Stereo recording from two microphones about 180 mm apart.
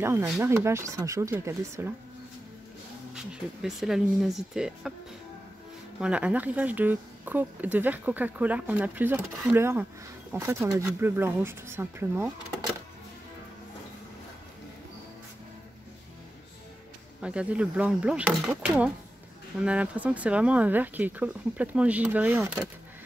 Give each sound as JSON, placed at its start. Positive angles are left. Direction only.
{"t": 0.0, "sound": "speech", "side_deg": -15}
{"t": 3.2, "sound": "speech", "side_deg": 0}
{"t": 5.9, "sound": "speech", "side_deg": -5}
{"t": 17.2, "sound": "speech", "side_deg": -5}